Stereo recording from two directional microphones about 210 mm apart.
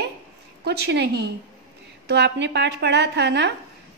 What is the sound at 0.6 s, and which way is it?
A woman's voice, 50° right (ahead or behind).